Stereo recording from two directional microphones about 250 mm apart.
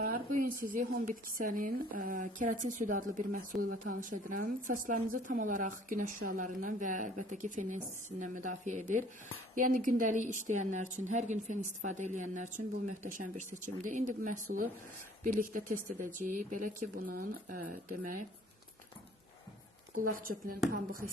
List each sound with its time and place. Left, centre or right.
0.0 s a woman's voice: right
20.0 s speech: right